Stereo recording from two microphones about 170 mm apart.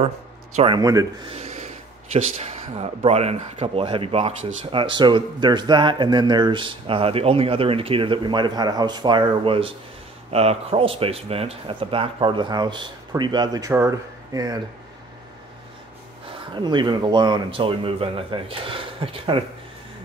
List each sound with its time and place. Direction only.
0.6 s speech: 25° right (ahead or behind)
1.3 s speech: 40° right (ahead or behind); by 14.6 s 20° right (ahead or behind)
16.3 s speech: 25° right (ahead or behind)